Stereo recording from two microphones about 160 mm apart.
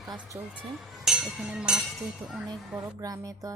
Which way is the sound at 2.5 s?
20° right (ahead or behind).